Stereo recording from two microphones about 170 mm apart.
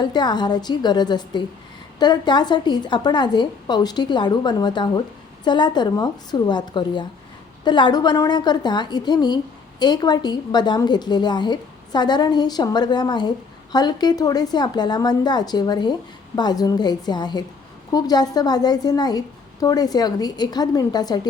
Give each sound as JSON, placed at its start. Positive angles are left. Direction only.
{"t": 0.0, "sound": "a woman's voice", "side_deg": 25}